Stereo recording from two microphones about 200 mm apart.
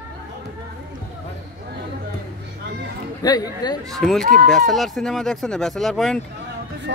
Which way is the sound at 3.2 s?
20° left (ahead or behind).